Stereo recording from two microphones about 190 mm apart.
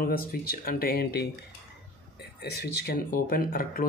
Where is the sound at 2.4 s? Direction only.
60° left (ahead or behind).